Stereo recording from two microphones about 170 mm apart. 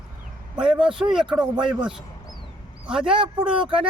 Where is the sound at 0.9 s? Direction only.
30° right (ahead or behind).